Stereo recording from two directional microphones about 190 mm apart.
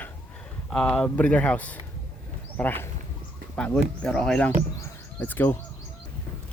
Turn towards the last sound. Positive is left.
turn(degrees=10)  # may be behind; listen again after turning